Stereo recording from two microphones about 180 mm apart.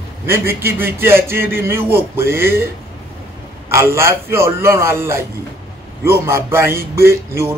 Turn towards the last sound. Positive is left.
turn(degrees=-15)  # may be behind; listen again after turning